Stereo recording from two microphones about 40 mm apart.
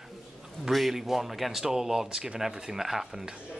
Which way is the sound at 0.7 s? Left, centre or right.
Centre.